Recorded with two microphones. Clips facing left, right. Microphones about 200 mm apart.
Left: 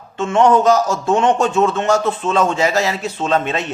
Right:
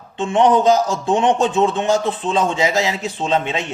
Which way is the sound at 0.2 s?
15° right (ahead or behind).